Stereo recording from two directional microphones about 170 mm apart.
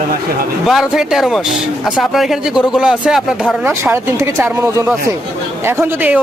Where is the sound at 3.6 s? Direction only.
15° right (ahead or behind).